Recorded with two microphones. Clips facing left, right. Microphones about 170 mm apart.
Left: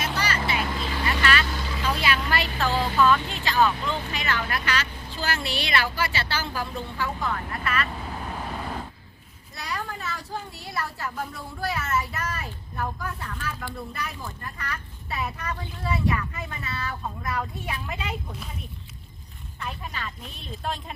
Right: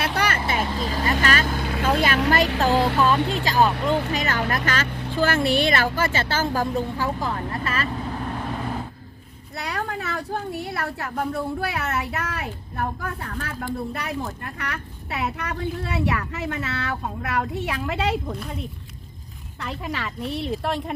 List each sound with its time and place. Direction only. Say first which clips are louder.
0.0 s vehicle: right 4 dB; 60° right (ahead or behind)
0.7 s vehicle: right 4 dB; 40° right (ahead or behind)
2.6 s a sound: right 6 dB; 40° right (ahead or behind)
3.2 s speech: right 3 dB; 40° right (ahead or behind)
3.8 s speech: right 6 dB; 50° right (ahead or behind); by 7.9 s 30° right (ahead or behind)
9.6 s speech: right 4 dB; 60° right (ahead or behind); by 18.3 s 75° right (ahead or behind)
19.5 s speech: right 5 dB; 80° right; by 20.9 s 65° right (ahead or behind)